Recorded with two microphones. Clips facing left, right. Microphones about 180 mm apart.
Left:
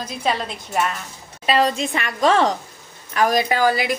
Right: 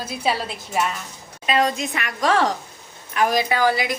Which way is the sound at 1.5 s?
30° left (ahead or behind).